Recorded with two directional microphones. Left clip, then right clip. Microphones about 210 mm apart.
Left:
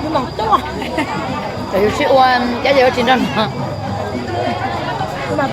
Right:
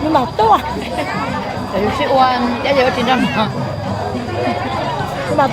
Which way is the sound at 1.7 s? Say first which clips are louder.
Left 2 dB; 15° left (ahead or behind).